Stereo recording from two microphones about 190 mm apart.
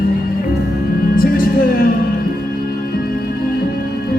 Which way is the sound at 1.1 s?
50° left (ahead or behind).